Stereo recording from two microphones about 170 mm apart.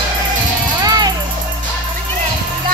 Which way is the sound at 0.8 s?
25° right (ahead or behind).